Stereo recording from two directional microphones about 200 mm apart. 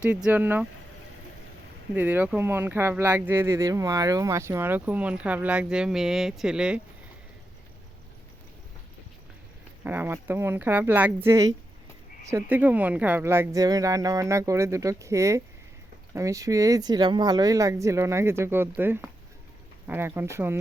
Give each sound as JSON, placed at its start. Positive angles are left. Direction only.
{"t": 0.0, "sound": "speech", "side_deg": -5}
{"t": 1.9, "sound": "speech", "side_deg": -10}
{"t": 9.8, "sound": "speech", "side_deg": -10}